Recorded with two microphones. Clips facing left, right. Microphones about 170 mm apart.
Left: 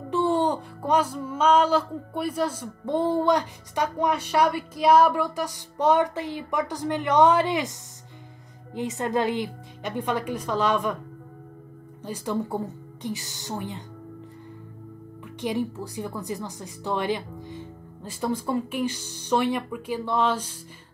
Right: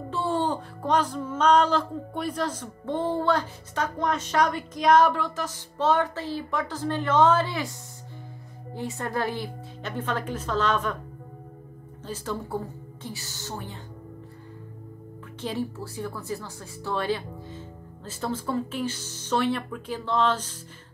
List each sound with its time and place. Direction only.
0.1 s music: 15° left (ahead or behind)
8.7 s music: 20° left (ahead or behind)
12.0 s music: 15° left (ahead or behind)
15.4 s music: 15° left (ahead or behind)